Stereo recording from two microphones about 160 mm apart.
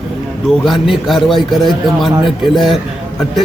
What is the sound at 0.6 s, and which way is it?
Speech, centre (ahead or behind).